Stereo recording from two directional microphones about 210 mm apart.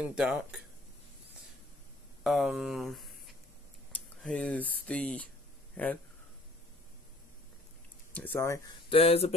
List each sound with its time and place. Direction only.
0.0 s speech: 5° right (ahead or behind)
2.2 s speech: centre (ahead or behind)
4.2 s speech: 5° left (ahead or behind)
8.1 s speech: 10° left (ahead or behind)
8.8 s speech: 25° left (ahead or behind)